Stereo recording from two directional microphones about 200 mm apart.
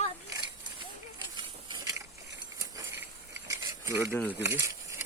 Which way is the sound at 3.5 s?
15° right (ahead or behind).